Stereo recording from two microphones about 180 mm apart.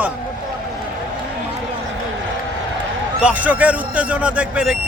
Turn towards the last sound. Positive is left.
turn(degrees=-5)  # may be behind; listen again after turning